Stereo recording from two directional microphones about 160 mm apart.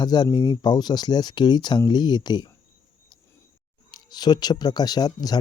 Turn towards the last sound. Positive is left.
turn(degrees=25)  # may be behind; listen again after turning